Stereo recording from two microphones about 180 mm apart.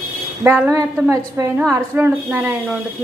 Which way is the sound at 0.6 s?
15° right (ahead or behind).